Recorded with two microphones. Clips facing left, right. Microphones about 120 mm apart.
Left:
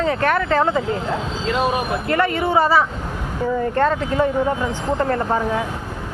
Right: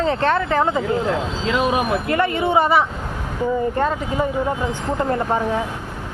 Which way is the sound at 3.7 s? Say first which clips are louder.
Left 3 dB; 10° right (ahead or behind).